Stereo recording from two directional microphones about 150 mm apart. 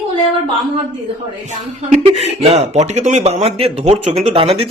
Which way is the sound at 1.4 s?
50° right (ahead or behind).